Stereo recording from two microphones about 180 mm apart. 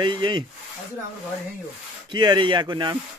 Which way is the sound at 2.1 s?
25° right (ahead or behind).